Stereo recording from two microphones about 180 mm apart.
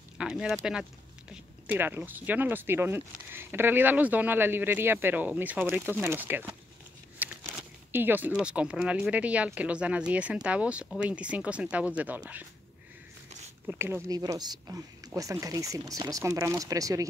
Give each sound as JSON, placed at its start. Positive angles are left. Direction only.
{"t": 0.2, "sound": "speech", "side_deg": -5}
{"t": 7.2, "sound": "a sound", "side_deg": -10}
{"t": 7.9, "sound": "speech", "side_deg": -10}
{"t": 13.7, "sound": "speech", "side_deg": -15}